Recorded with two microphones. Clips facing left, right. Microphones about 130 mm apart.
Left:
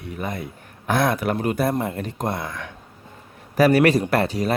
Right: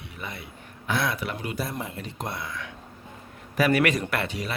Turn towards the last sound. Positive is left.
turn(degrees=40)  # may be behind; listen again after turning